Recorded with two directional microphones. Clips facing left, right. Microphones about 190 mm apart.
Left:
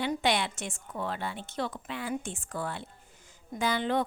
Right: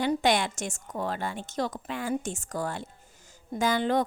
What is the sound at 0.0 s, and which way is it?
A woman's voice, 45° right (ahead or behind).